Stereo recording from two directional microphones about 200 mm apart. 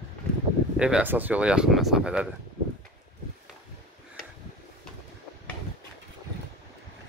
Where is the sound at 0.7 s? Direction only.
5° right (ahead or behind).